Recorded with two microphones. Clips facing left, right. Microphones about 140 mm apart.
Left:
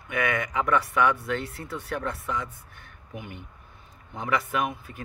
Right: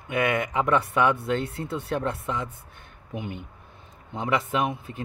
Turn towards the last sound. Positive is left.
turn(degrees=-25)  # may be behind; listen again after turning